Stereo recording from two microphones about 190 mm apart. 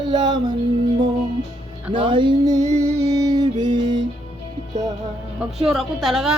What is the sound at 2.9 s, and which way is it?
Music, 15° right (ahead or behind).